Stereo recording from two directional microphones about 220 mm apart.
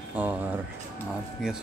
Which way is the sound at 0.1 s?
5° right (ahead or behind).